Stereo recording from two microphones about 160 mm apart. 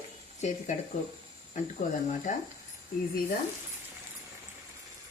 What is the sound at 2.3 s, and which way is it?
Speech, 50° left (ahead or behind).